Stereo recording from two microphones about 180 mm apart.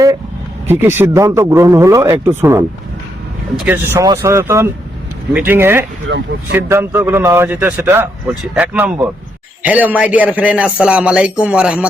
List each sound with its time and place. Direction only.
0.7 s a man's voice: 15° right (ahead or behind)
3.9 s a man's voice: 20° right (ahead or behind)
6.1 s speech: 90° right
6.5 s a man's voice: 15° right (ahead or behind)